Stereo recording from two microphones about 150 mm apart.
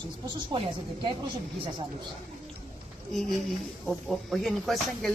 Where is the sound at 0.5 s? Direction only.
30° right (ahead or behind).